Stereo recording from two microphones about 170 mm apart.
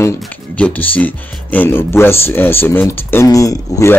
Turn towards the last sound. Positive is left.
turn(degrees=20)  # may be behind; listen again after turning